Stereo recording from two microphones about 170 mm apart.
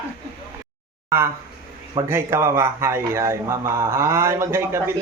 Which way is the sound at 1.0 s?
15° right (ahead or behind).